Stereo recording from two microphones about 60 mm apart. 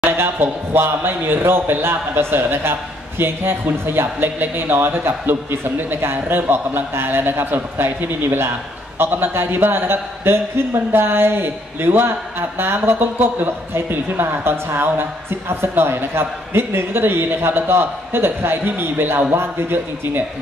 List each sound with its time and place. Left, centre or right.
0.2 s a man's voice: right